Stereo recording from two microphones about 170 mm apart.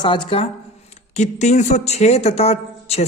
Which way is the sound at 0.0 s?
30° left (ahead or behind).